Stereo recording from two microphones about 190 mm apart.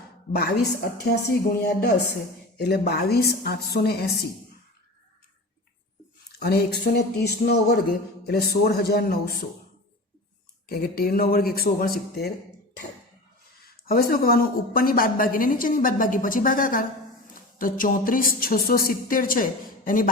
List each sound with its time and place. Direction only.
0.3 s a woman's voice: 55° left (ahead or behind)
6.4 s a woman's voice: 55° left (ahead or behind)
10.7 s a woman's voice: 55° left (ahead or behind)
13.7 s a woman's voice: 55° left (ahead or behind)